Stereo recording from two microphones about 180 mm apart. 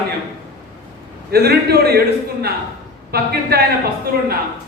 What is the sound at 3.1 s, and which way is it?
Speech, 60° right (ahead or behind).